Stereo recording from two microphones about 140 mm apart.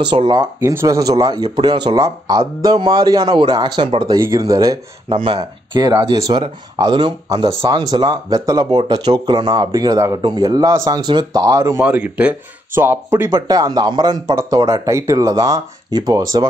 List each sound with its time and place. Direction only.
0.0 s speech: 35° right (ahead or behind)
0.6 s speech: 20° right (ahead or behind)
4.2 s speech: 25° right (ahead or behind)
11.8 s speech: 10° right (ahead or behind)
13.3 s speech: 25° right (ahead or behind)